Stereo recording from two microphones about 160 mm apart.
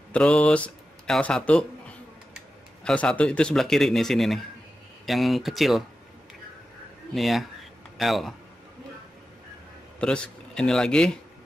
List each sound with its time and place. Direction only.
0.1 s speech: 5° left (ahead or behind)
2.8 s speech: 5° left (ahead or behind)
7.2 s speech: centre (ahead or behind)
9.9 s speech: 5° left (ahead or behind)